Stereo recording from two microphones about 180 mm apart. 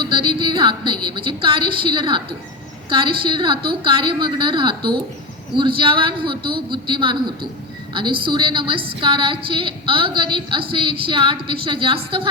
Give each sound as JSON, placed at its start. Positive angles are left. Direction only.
{"t": 0.0, "sound": "a woman's voice", "side_deg": -25}
{"t": 8.2, "sound": "a woman's voice", "side_deg": -25}